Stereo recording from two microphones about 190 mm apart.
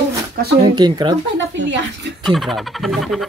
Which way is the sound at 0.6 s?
20° right (ahead or behind).